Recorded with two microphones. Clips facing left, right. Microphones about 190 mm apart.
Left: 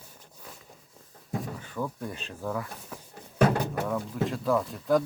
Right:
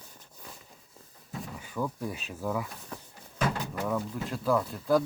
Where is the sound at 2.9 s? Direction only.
5° left (ahead or behind).